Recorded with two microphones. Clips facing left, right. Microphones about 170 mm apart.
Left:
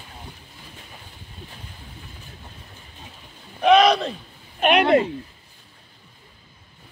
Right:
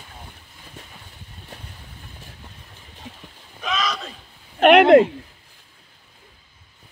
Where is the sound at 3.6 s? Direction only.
60° left (ahead or behind).